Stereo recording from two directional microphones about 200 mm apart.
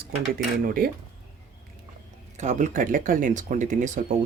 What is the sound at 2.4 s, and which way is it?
Speech, 35° right (ahead or behind).